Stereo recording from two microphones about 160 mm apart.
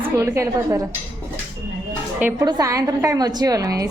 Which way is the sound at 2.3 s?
25° right (ahead or behind).